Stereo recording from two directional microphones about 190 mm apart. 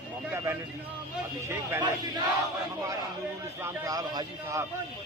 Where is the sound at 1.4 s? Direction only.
15° right (ahead or behind).